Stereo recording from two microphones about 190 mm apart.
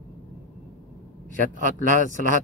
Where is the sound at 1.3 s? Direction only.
45° right (ahead or behind).